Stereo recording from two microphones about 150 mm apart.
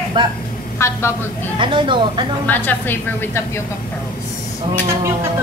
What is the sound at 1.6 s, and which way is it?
Speech, 35° right (ahead or behind).